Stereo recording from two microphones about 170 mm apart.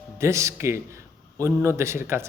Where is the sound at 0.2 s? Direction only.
15° right (ahead or behind).